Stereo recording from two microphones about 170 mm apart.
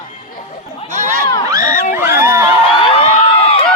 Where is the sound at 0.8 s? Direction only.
45° right (ahead or behind).